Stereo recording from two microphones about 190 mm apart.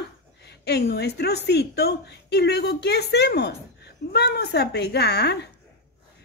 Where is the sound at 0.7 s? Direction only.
60° left (ahead or behind).